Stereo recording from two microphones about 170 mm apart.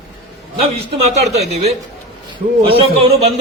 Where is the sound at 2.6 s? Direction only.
35° right (ahead or behind).